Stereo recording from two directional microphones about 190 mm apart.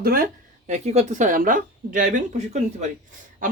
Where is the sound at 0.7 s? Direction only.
35° right (ahead or behind).